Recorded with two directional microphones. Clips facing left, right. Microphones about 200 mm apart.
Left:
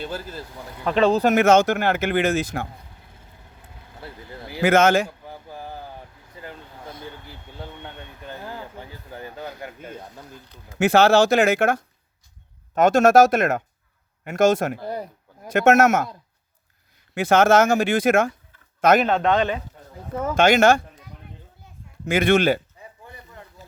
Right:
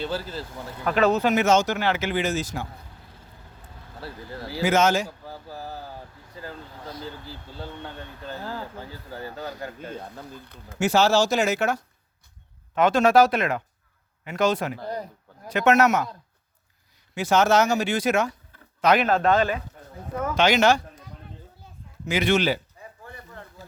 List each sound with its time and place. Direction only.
0.9 s speech: 30° left (ahead or behind)
1.2 s speech: 50° left (ahead or behind)
4.0 s speech: 20° left (ahead or behind)
4.6 s speech: 55° left (ahead or behind)
5.2 s a sound: 20° left (ahead or behind)
6.4 s speech: 20° left (ahead or behind)
10.8 s speech: 55° left (ahead or behind)
14.8 s speech: 10° left (ahead or behind)
15.5 s speech: 50° left (ahead or behind)
17.2 s speech: 55° left (ahead or behind)
19.0 s speech: centre (ahead or behind)
20.3 s speech: 50° left (ahead or behind)
22.0 s speech: 55° left (ahead or behind)
23.0 s a sound: 15° left (ahead or behind)